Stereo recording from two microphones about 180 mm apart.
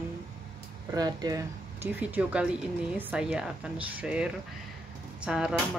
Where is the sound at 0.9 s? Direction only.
20° right (ahead or behind).